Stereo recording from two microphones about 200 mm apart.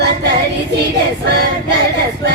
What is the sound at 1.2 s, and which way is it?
Female singing, 55° right (ahead or behind).